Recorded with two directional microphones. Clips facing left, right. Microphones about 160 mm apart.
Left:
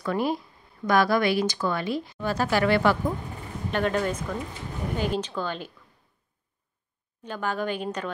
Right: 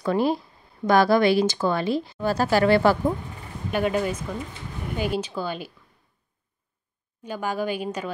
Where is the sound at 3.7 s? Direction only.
10° right (ahead or behind).